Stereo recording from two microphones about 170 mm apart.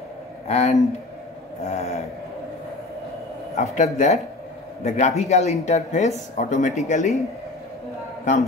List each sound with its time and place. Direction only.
0.5 s snoring: 40° left (ahead or behind)
3.5 s speech: 45° left (ahead or behind)